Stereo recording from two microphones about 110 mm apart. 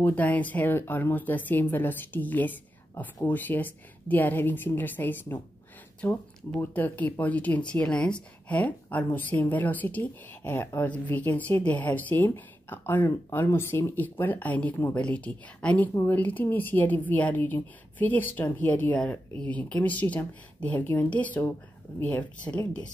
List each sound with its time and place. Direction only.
0.0 s speech: 15° left (ahead or behind)
15.9 s speech: 25° left (ahead or behind)
16.2 s speech: 15° left (ahead or behind)